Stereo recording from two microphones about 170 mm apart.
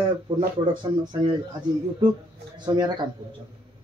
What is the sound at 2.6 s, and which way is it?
Speech, 25° right (ahead or behind).